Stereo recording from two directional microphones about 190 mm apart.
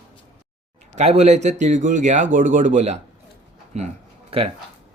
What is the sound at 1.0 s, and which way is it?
Speech, 35° right (ahead or behind).